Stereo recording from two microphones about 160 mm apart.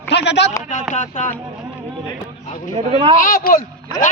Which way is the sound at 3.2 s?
60° left (ahead or behind).